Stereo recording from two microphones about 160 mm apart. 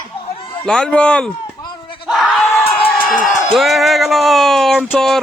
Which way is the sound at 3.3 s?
50° left (ahead or behind).